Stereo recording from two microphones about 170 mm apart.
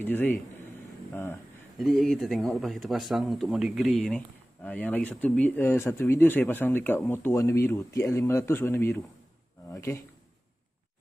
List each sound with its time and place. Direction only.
0.0 s speech: 10° left (ahead or behind)
1.8 s speech: centre (ahead or behind); by 10.0 s 20° left (ahead or behind)